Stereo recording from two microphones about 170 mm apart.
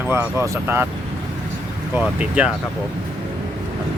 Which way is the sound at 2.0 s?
5° right (ahead or behind).